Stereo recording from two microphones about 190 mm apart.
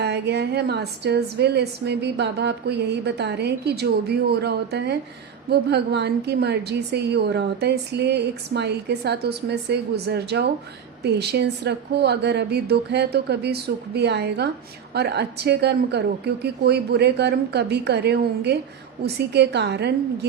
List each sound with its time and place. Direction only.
0.0 s a woman's voice: 60° right (ahead or behind)